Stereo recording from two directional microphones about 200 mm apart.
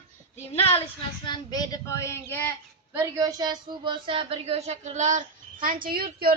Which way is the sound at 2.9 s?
15° right (ahead or behind).